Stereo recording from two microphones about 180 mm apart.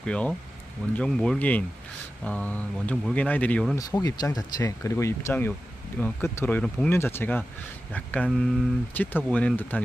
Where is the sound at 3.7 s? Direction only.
20° left (ahead or behind).